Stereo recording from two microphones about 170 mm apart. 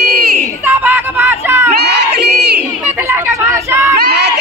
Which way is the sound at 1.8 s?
75° right (ahead or behind).